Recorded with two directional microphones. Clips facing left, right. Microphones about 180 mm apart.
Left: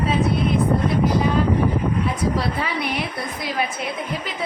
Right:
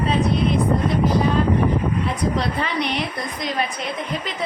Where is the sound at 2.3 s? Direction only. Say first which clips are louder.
Right 1 dB; 5° left (ahead or behind).